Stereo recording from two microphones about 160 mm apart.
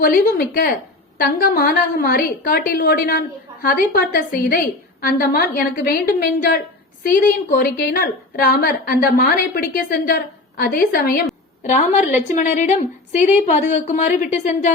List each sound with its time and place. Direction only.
0.0 s a woman's voice: 70° left (ahead or behind)
7.0 s a woman's voice: 65° left (ahead or behind)
11.7 s a woman's voice: 45° left (ahead or behind)